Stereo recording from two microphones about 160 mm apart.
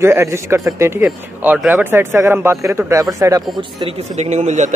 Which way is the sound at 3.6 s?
35° right (ahead or behind).